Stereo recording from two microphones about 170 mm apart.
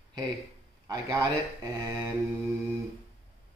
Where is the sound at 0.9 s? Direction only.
20° right (ahead or behind).